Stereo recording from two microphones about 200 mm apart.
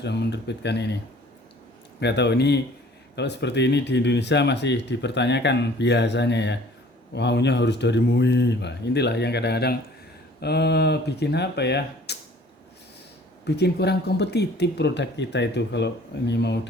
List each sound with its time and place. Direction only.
0.0 s speech: 55° left (ahead or behind)
2.0 s speech: 60° left (ahead or behind)
13.4 s speech: 55° left (ahead or behind)